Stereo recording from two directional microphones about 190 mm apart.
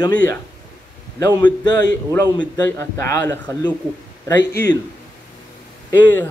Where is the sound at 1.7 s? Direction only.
20° left (ahead or behind).